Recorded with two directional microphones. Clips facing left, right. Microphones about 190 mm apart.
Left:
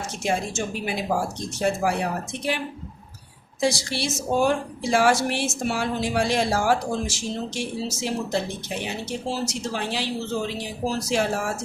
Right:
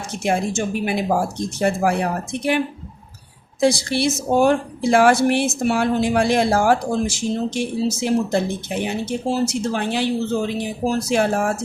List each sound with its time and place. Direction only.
0.2 s speech: 55° right (ahead or behind)
3.6 s speech: 55° right (ahead or behind)